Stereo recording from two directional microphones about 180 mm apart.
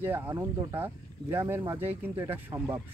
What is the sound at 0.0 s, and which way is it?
Speech, 10° right (ahead or behind).